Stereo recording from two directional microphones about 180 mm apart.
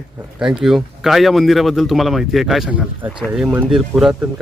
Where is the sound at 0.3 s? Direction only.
5° right (ahead or behind).